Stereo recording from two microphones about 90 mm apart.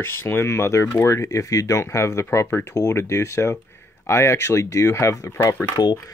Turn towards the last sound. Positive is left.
turn(degrees=50)  # may be behind; listen again after turning